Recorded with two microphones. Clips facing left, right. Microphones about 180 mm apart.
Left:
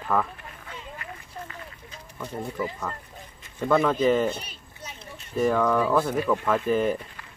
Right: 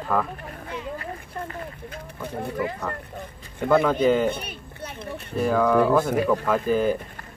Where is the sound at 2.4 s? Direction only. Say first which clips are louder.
Right 3 dB; 65° right (ahead or behind).